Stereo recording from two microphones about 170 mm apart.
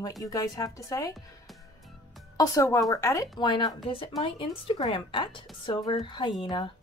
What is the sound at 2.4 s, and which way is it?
Speech, 20° left (ahead or behind).